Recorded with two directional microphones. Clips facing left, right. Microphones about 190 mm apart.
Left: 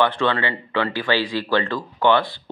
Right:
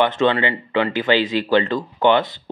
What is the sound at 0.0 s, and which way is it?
Speech, 20° right (ahead or behind).